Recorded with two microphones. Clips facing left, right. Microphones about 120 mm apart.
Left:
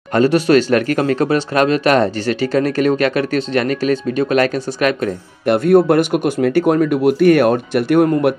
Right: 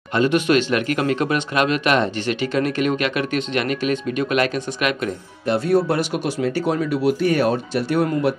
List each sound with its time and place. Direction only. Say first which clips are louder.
0.1 s speech: left 5 dB; 40° left (ahead or behind)
5.5 s speech: left 7 dB; 55° left (ahead or behind)